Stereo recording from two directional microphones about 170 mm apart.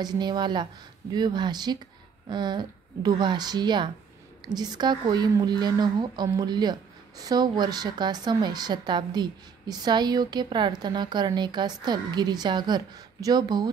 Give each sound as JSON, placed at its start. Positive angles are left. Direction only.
{"t": 0.0, "sound": "a woman's voice", "side_deg": -25}